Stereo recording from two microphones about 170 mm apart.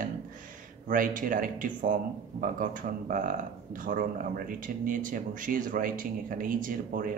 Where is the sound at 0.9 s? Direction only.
55° right (ahead or behind).